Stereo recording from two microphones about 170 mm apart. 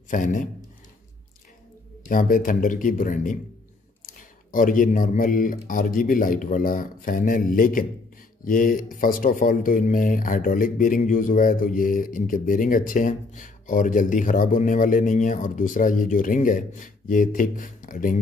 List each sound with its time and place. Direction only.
0.1 s speech: 50° left (ahead or behind)
2.0 s speech: 55° left (ahead or behind)